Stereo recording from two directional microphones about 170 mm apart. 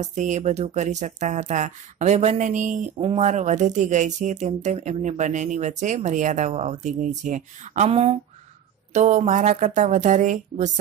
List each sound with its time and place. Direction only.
0.0 s speech: 45° right (ahead or behind)